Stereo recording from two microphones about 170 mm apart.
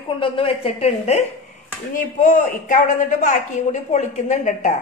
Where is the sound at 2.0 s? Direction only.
45° left (ahead or behind).